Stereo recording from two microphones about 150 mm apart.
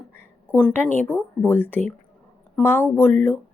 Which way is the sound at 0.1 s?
15° left (ahead or behind).